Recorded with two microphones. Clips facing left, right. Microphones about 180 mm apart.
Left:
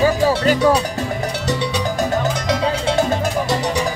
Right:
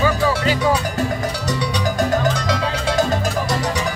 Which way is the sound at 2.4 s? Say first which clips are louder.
Left 2 dB; 25° left (ahead or behind).